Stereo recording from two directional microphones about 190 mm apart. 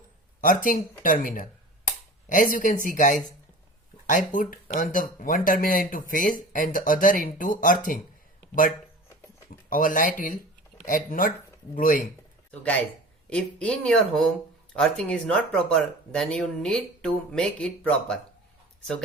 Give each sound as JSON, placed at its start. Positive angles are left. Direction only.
{"t": 0.4, "sound": "speech", "side_deg": 45}
{"t": 9.6, "sound": "speech", "side_deg": 45}
{"t": 13.3, "sound": "speech", "side_deg": 5}